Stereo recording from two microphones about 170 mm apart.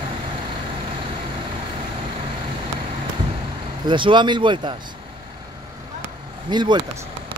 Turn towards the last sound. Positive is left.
turn(degrees=-25)  # may be behind; listen again after turning